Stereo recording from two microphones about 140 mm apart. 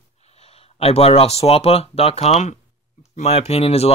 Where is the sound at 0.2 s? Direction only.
50° left (ahead or behind).